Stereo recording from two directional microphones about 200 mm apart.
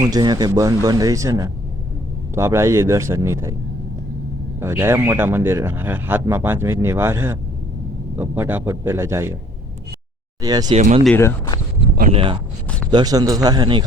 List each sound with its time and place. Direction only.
0.0 s speech: 20° right (ahead or behind)
4.6 s speech: 10° right (ahead or behind)
10.4 s a man's voice: 20° right (ahead or behind)
10.8 s speech: 35° right (ahead or behind)
11.0 s speech: 10° left (ahead or behind)
12.1 s a man's voice: 25° right (ahead or behind)